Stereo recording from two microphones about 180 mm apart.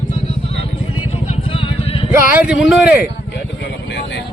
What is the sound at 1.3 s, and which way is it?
Vehicle, 30° left (ahead or behind).